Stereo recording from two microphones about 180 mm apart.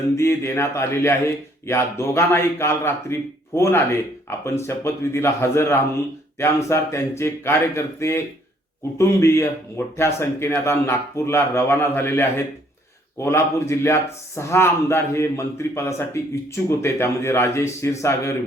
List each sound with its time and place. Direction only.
0.2 s a man's voice: 15° left (ahead or behind)